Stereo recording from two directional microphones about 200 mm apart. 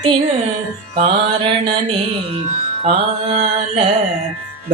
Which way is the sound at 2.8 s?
30° right (ahead or behind).